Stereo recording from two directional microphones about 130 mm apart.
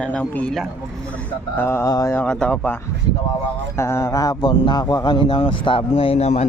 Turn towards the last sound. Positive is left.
turn(degrees=55)  # may be behind; listen again after turning